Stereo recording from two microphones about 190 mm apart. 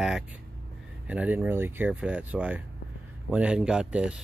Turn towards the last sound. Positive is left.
turn(degrees=-5)  # may be behind; listen again after turning